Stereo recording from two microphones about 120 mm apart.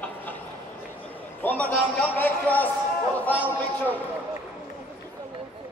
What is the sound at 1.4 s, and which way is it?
A man's voice, 15° left (ahead or behind).